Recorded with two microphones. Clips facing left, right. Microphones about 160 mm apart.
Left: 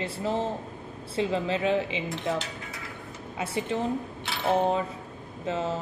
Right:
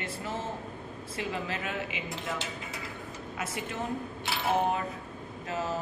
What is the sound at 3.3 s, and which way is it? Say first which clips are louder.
Speech: left 7 dB; 30° left (ahead or behind).